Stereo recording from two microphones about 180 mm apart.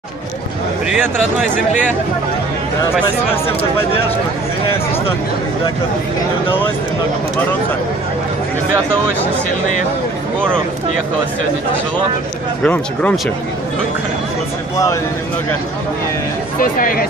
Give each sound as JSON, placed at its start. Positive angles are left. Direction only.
{"t": 12.6, "sound": "speech", "side_deg": 10}
{"t": 16.5, "sound": "speech", "side_deg": 50}